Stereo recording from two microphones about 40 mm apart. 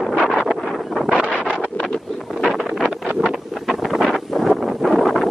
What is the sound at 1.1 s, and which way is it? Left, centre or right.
Wind noise, left.